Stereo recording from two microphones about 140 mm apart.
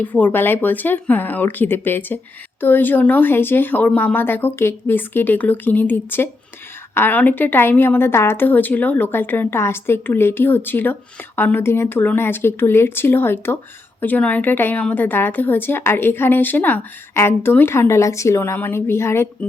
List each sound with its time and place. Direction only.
0.0 s a woman's voice: 10° left (ahead or behind)